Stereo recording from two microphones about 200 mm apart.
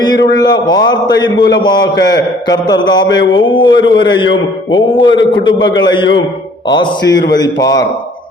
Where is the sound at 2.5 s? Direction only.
20° left (ahead or behind).